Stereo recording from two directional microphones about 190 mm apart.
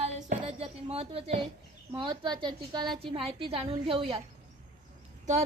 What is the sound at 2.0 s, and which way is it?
A woman's voice, 25° right (ahead or behind).